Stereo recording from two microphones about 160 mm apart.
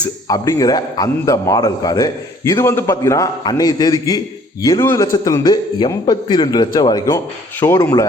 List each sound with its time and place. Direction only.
0.3 s a man's voice: 20° left (ahead or behind)